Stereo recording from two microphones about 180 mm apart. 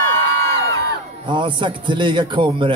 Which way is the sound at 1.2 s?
25° right (ahead or behind).